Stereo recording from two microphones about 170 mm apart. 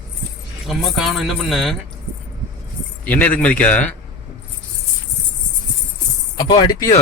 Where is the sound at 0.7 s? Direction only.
Centre (ahead or behind).